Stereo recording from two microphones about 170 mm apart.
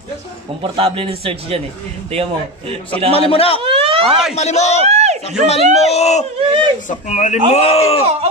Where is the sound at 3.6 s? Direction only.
35° right (ahead or behind).